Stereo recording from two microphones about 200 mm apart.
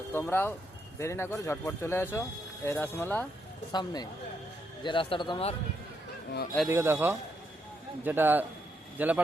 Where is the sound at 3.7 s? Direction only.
20° left (ahead or behind).